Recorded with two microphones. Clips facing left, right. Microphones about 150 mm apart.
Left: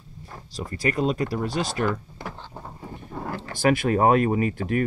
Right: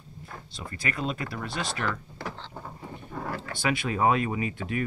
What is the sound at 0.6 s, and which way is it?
Speech, 35° left (ahead or behind).